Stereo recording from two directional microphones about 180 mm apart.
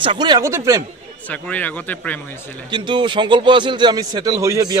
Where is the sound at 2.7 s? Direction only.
25° right (ahead or behind).